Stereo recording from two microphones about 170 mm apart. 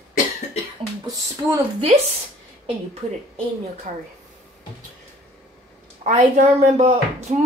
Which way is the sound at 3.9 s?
45° right (ahead or behind).